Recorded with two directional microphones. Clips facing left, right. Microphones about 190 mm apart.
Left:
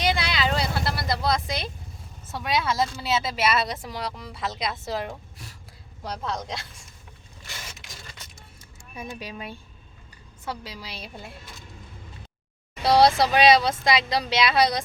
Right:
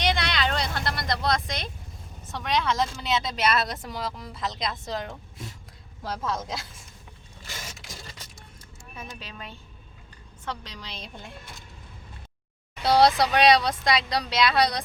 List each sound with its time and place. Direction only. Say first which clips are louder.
0.0 s vehicle: left 1 dB; 5° left (ahead or behind)
2.3 s speech: even; 5° left (ahead or behind)
7.4 s printer: right 2 dB; 40° right (ahead or behind)
9.0 s a woman's voice: left 5 dB; 10° left (ahead or behind)
12.8 s speech: left 1 dB; centre (ahead or behind)